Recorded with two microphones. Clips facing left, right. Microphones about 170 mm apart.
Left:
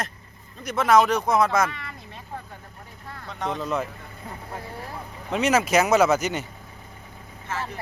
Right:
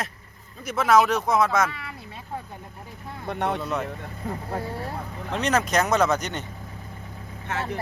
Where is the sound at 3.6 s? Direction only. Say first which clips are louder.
Left 1 dB; centre (ahead or behind).